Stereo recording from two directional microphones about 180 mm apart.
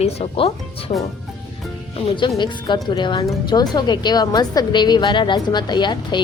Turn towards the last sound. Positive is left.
turn(degrees=25)  # may be behind; listen again after turning